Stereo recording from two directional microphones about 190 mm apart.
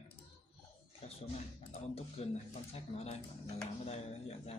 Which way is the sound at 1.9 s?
30° left (ahead or behind).